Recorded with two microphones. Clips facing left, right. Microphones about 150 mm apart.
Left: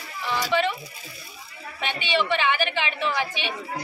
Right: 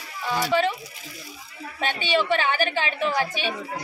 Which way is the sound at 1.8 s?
40° right (ahead or behind).